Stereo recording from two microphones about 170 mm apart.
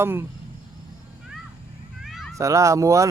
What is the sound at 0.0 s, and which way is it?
Speech, 15° right (ahead or behind).